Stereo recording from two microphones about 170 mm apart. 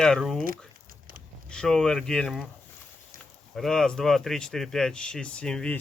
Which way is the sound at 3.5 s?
Centre (ahead or behind).